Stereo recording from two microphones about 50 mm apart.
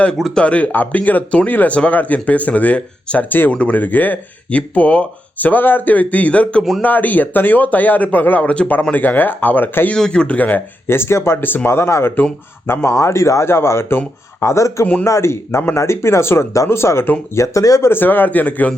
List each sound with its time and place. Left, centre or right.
0.3 s speech: left
3.2 s speech: left
3.5 s speech: left
10.0 s speech: centre
10.3 s speech: left
10.8 s speech: left
11.4 s speech: left
11.7 s speech: left
12.6 s speech: left
13.0 s speech: left
14.4 s speech: left
15.0 s speech: left
17.3 s speech: left
17.9 s speech: left